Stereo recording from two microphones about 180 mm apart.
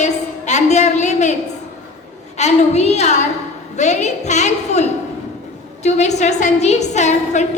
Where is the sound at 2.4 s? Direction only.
40° left (ahead or behind).